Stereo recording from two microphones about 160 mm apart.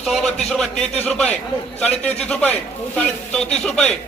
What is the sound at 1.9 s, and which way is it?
Speech, 45° left (ahead or behind).